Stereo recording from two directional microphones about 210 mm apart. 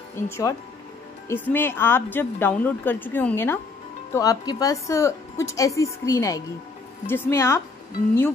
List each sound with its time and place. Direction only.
0.1 s a woman's voice: 15° left (ahead or behind)